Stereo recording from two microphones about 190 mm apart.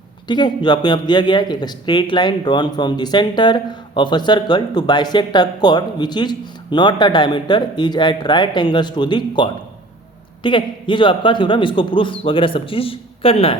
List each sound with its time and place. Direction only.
0.3 s speech: 25° left (ahead or behind)